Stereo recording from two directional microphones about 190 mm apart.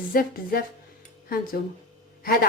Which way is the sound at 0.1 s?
50° left (ahead or behind).